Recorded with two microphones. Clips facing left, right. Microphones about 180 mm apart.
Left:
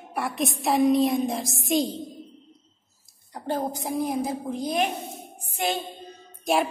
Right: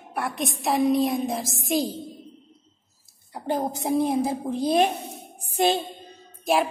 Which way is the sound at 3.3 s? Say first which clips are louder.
Right 2 dB; 20° right (ahead or behind).